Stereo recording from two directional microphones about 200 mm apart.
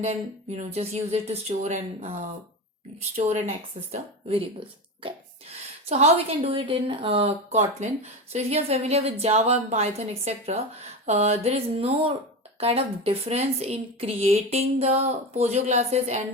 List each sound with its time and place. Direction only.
0.5 s a woman's voice: 30° right (ahead or behind)
3.2 s a woman's voice: 35° right (ahead or behind)
5.0 s a woman's voice: 30° right (ahead or behind)